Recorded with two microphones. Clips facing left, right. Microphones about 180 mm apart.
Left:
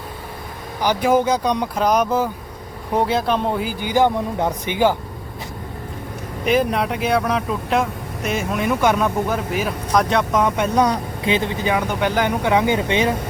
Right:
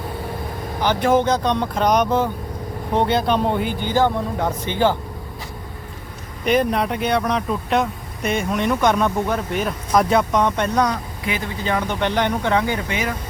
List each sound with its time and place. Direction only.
0.8 s speech: 10° left (ahead or behind)
6.4 s speech: centre (ahead or behind)
10.8 s speech: 25° left (ahead or behind)
11.6 s speech: 10° left (ahead or behind); by 13.1 s 25° left (ahead or behind)